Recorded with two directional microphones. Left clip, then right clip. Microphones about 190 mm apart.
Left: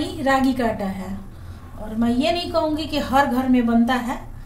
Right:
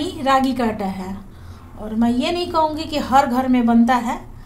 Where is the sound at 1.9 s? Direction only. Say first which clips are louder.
Right 1 dB; 45° right (ahead or behind).